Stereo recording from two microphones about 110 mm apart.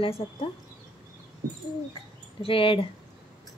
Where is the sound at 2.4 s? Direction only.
55° left (ahead or behind).